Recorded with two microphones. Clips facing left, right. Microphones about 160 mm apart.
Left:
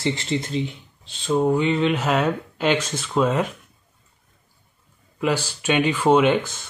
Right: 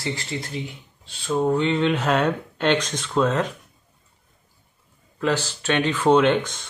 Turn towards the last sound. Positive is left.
turn(degrees=5)  # may be behind; listen again after turning